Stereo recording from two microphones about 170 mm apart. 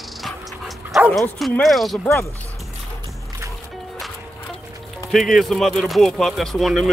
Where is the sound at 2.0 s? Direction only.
15° left (ahead or behind).